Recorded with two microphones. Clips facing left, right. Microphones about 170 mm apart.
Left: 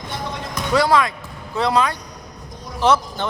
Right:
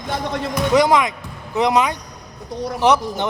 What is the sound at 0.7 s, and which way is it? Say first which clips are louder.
Speech: right 1 dB; 20° right (ahead or behind).